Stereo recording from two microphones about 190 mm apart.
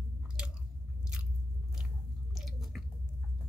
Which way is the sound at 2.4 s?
Centre (ahead or behind).